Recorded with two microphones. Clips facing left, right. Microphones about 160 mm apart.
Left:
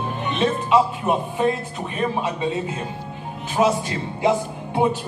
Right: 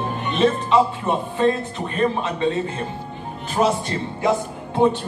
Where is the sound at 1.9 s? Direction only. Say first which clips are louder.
Right 2 dB; 10° left (ahead or behind).